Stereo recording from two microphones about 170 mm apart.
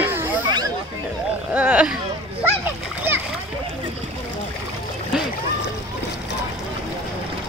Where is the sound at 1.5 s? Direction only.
10° right (ahead or behind).